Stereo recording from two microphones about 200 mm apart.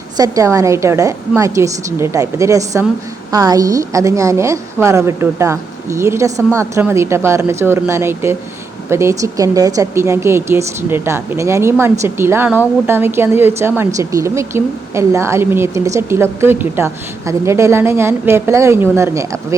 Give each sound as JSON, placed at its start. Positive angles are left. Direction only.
{"t": 0.2, "sound": "speech", "side_deg": -15}